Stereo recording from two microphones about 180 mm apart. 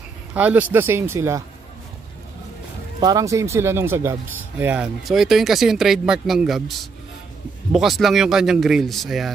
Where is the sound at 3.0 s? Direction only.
20° right (ahead or behind); by 6.7 s centre (ahead or behind).